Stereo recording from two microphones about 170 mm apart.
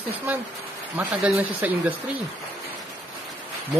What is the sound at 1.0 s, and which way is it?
Speech, 10° right (ahead or behind).